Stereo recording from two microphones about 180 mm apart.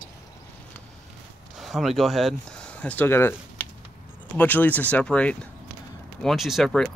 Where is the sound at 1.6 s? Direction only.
Centre (ahead or behind).